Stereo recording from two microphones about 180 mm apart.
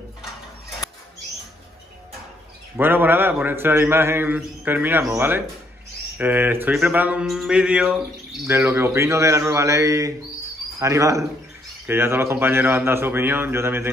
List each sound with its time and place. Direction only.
2.8 s mantra: 10° right (ahead or behind)